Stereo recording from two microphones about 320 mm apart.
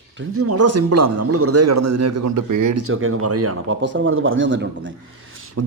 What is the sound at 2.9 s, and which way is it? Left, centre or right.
Speech, right.